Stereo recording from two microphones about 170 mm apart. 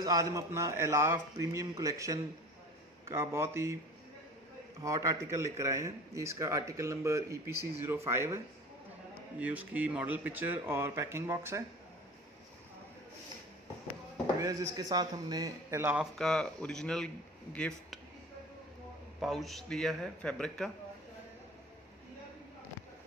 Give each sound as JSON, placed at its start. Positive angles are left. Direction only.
{"t": 0.0, "sound": "a man's voice", "side_deg": -20}
{"t": 4.8, "sound": "a man's voice", "side_deg": -20}
{"t": 9.4, "sound": "a man's voice", "side_deg": -10}
{"t": 14.4, "sound": "a man's voice", "side_deg": -20}
{"t": 16.2, "sound": "a man's voice", "side_deg": 5}
{"t": 19.2, "sound": "a man's voice", "side_deg": 0}